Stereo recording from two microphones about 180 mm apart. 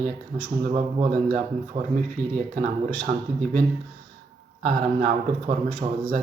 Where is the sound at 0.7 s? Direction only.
25° right (ahead or behind).